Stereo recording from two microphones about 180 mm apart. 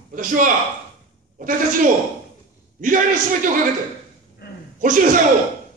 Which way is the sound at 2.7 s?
45° right (ahead or behind).